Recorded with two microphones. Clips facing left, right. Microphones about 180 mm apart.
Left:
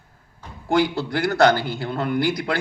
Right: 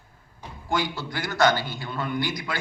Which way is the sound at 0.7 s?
60° left (ahead or behind).